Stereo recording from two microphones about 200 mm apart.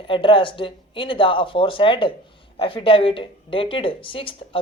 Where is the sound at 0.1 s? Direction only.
25° left (ahead or behind).